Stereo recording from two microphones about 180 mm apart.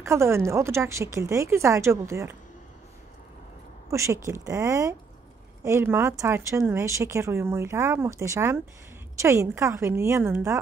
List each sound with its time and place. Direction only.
0.0 s speech: 15° right (ahead or behind)
3.9 s speech: 15° right (ahead or behind)